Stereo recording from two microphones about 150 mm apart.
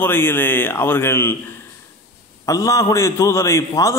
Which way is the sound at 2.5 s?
20° left (ahead or behind).